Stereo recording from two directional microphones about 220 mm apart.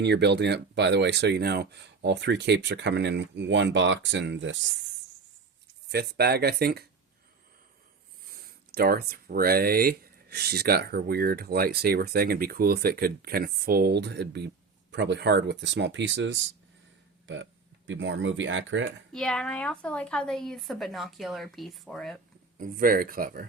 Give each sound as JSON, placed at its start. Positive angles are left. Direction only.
{"t": 0.0, "sound": "speech", "side_deg": -50}
{"t": 5.9, "sound": "speech", "side_deg": -45}
{"t": 8.3, "sound": "speech", "side_deg": -40}
{"t": 19.1, "sound": "a woman's voice", "side_deg": 5}
{"t": 22.5, "sound": "speech", "side_deg": -40}